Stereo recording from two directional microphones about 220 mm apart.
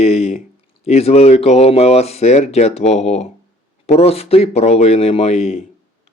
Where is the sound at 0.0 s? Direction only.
30° left (ahead or behind).